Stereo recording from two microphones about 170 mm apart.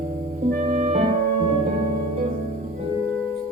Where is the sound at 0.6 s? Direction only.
40° right (ahead or behind).